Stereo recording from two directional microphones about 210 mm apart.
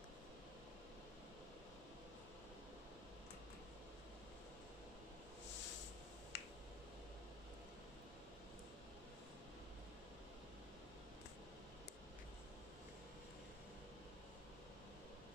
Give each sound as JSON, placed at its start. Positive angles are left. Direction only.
{"t": 6.3, "sound": "finger snapping", "side_deg": 50}